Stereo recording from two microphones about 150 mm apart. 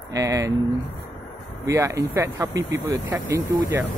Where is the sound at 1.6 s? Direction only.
20° right (ahead or behind).